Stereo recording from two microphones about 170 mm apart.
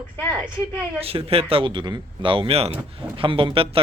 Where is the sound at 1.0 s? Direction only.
35° right (ahead or behind).